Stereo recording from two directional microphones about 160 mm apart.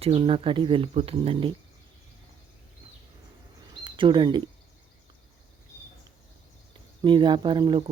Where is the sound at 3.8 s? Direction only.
30° right (ahead or behind).